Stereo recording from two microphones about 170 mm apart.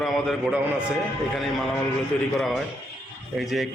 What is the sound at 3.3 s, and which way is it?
Mantra, centre (ahead or behind).